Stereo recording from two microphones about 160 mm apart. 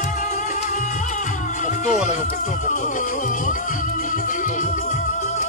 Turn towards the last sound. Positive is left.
turn(degrees=50)  # may be behind; listen again after turning